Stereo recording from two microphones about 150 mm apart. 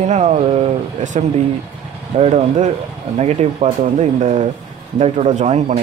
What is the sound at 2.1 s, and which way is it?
Speech, 45° right (ahead or behind).